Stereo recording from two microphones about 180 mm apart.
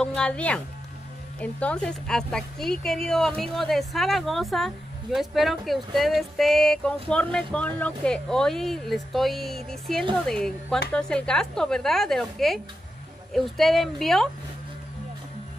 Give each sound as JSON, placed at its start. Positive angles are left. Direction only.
{"t": 0.0, "sound": "a woman's voice", "side_deg": 5}